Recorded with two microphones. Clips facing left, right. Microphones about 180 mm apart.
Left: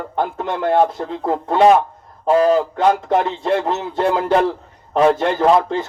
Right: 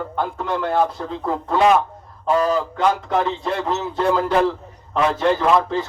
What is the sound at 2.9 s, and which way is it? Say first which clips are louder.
Speech: left 3 dB; 50° left (ahead or behind).